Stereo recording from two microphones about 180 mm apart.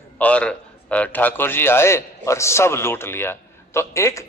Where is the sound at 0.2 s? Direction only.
5° left (ahead or behind).